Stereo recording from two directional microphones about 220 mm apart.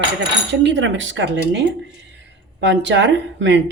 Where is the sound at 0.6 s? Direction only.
55° right (ahead or behind).